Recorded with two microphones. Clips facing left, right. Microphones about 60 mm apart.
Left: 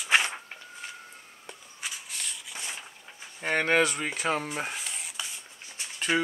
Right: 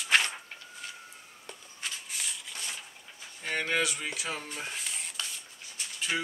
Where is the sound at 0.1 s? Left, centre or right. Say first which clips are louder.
Left 2 dB; centre.